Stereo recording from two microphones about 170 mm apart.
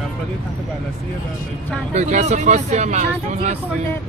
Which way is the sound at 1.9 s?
40° right (ahead or behind).